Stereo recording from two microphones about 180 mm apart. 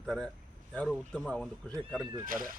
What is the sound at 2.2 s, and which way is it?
Speech, 50° right (ahead or behind).